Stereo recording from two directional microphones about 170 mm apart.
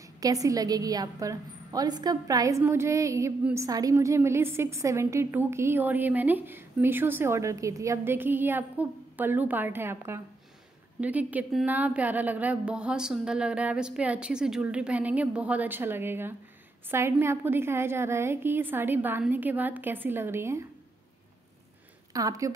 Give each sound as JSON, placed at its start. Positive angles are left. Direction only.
{"t": 0.0, "sound": "a woman's voice", "side_deg": -20}
{"t": 22.1, "sound": "a woman's voice", "side_deg": -20}